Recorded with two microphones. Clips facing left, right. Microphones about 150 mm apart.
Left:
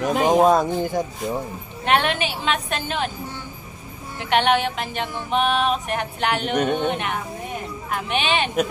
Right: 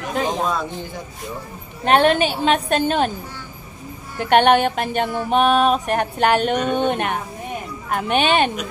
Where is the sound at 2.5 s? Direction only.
45° right (ahead or behind).